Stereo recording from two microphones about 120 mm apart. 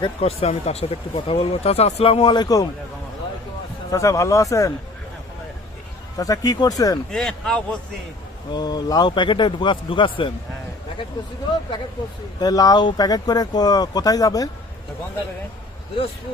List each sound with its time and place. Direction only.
0.0 s speech: 50° left (ahead or behind); by 2.6 s 35° left (ahead or behind)
3.9 s speech: 25° left (ahead or behind)
6.1 s speech: 30° left (ahead or behind)
7.1 s speech: 5° left (ahead or behind)
8.5 s speech: 35° left (ahead or behind)
12.4 s speech: 30° left (ahead or behind)